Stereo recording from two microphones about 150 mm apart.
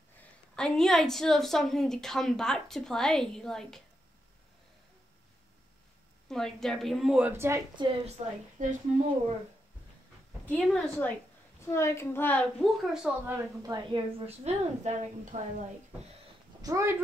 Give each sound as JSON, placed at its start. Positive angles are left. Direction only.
{"t": 0.6, "sound": "a woman's voice", "side_deg": 5}
{"t": 6.2, "sound": "a woman's voice", "side_deg": 5}
{"t": 7.3, "sound": "a woman's voice", "side_deg": -20}
{"t": 8.2, "sound": "a woman's voice", "side_deg": -45}
{"t": 8.6, "sound": "speech", "side_deg": -60}
{"t": 10.4, "sound": "a woman's voice", "side_deg": 5}
{"t": 11.6, "sound": "a woman's voice", "side_deg": 20}
{"t": 13.2, "sound": "a woman's voice", "side_deg": -15}
{"t": 14.2, "sound": "a woman's voice", "side_deg": -45}
{"t": 16.6, "sound": "a woman's voice", "side_deg": -20}